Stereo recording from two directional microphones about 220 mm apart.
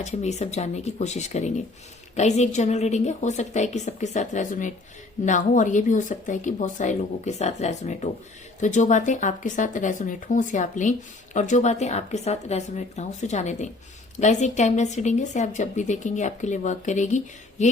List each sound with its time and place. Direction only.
0.0 s speech: 30° left (ahead or behind)